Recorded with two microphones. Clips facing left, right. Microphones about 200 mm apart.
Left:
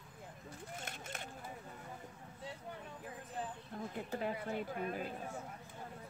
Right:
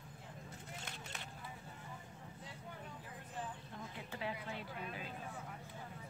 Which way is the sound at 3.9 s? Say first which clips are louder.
Left 5 dB; 50° left (ahead or behind).